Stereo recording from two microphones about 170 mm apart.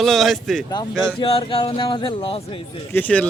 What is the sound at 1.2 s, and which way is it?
Speech, 35° left (ahead or behind).